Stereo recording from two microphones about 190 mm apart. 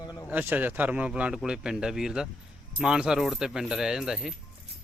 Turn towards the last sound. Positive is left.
turn(degrees=-5)  # may be behind; listen again after turning